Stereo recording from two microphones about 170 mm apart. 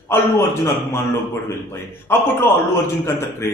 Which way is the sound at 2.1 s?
10° left (ahead or behind).